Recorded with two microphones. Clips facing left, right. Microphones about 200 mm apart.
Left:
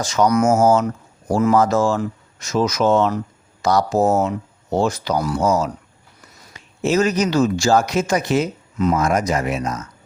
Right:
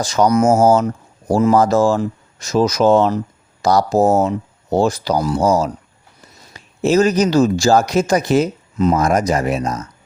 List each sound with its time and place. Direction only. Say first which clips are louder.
0.0 s speech: right 2 dB; 35° right (ahead or behind)